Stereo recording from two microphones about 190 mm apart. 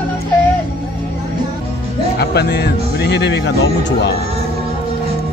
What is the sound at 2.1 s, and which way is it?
Speech, 60° left (ahead or behind).